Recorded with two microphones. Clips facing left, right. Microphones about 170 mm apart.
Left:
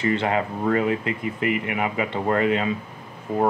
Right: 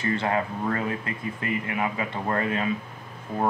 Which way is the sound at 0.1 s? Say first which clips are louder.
Left 3 dB; 20° left (ahead or behind).